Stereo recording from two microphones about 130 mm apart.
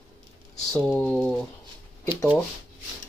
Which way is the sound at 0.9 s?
10° left (ahead or behind).